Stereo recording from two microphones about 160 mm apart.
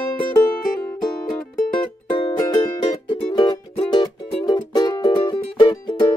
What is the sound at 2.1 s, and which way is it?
Music, 30° left (ahead or behind).